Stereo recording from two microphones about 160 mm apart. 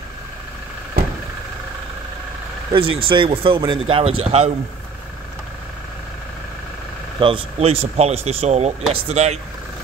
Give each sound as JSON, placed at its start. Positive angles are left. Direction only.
{"t": 2.7, "sound": "speech", "side_deg": -35}
{"t": 7.2, "sound": "speech", "side_deg": -35}